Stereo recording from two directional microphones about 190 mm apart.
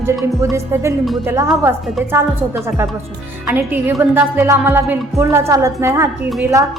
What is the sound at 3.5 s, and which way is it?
A woman's voice, 15° right (ahead or behind).